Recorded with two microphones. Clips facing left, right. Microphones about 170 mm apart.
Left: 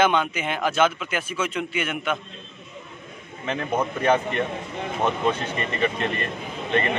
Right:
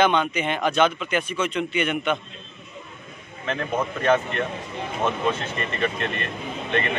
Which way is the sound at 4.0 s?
15° left (ahead or behind).